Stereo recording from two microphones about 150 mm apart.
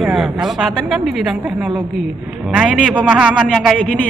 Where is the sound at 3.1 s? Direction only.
5° right (ahead or behind).